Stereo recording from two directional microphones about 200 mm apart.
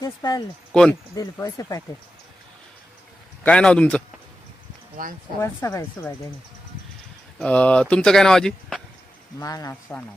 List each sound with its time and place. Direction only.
0.0 s speech: 20° left (ahead or behind)
0.7 s speech: 5° left (ahead or behind)
1.1 s speech: 20° left (ahead or behind)
3.4 s speech: 5° left (ahead or behind)
5.0 s speech: 45° right (ahead or behind)
5.4 s speech: 15° left (ahead or behind)
7.3 s speech: 5° left (ahead or behind)
9.4 s speech: 15° left (ahead or behind)